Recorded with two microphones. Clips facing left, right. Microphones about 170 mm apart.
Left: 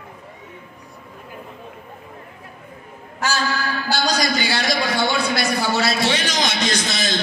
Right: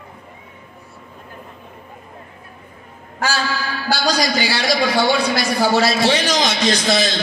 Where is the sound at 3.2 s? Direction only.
50° left (ahead or behind).